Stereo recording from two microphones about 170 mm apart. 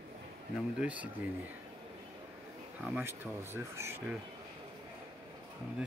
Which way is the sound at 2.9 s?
15° right (ahead or behind).